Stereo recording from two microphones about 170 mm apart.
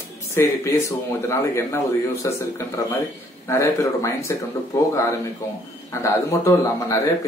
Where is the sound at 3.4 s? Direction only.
15° left (ahead or behind).